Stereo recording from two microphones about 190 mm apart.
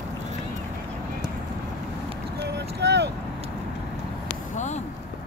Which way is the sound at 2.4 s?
60° right (ahead or behind).